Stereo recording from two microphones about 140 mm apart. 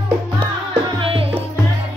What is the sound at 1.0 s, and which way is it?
Music, 40° right (ahead or behind).